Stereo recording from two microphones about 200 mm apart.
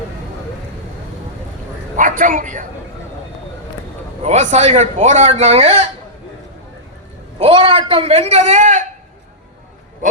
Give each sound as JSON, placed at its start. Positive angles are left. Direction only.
{"t": 2.0, "sound": "a man's voice", "side_deg": -40}
{"t": 4.2, "sound": "a man's voice", "side_deg": -35}
{"t": 7.3, "sound": "a man's voice", "side_deg": -30}
{"t": 10.0, "sound": "a man's voice", "side_deg": -40}